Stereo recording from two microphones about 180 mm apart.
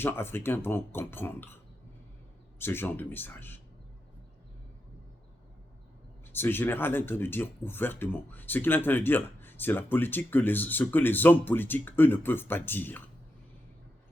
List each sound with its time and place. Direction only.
0.0 s speech: 10° left (ahead or behind)
2.6 s speech: 10° left (ahead or behind)
6.3 s speech: 10° left (ahead or behind)